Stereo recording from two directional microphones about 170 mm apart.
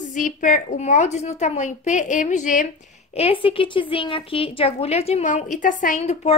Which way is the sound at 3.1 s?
35° left (ahead or behind).